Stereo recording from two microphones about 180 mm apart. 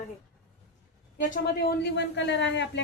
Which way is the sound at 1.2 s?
50° left (ahead or behind).